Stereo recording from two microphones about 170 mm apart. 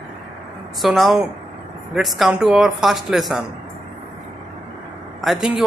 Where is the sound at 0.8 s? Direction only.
Centre (ahead or behind).